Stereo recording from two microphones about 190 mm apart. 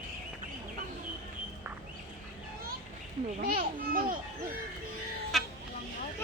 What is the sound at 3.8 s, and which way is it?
Speech, 50° right (ahead or behind).